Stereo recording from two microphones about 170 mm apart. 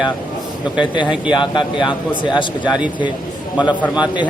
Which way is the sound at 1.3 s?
25° left (ahead or behind).